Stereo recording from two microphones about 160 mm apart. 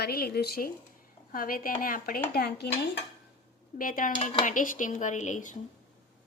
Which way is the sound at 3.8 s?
60° left (ahead or behind).